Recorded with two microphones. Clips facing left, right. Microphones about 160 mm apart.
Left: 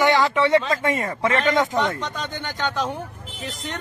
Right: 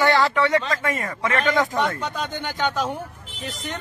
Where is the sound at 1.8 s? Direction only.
10° right (ahead or behind).